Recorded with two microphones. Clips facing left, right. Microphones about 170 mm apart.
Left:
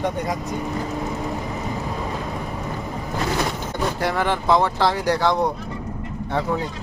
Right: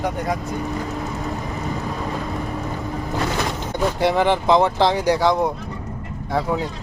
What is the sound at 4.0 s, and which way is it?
Speech, 20° right (ahead or behind).